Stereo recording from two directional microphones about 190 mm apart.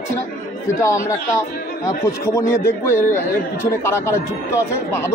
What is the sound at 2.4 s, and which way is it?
A man's voice, 15° left (ahead or behind).